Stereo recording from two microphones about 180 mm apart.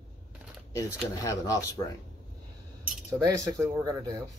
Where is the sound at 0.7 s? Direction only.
20° left (ahead or behind).